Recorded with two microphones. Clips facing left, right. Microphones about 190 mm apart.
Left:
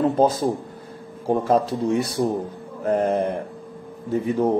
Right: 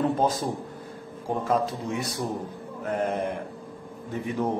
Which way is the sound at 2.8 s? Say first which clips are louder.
Left 7 dB; 40° left (ahead or behind).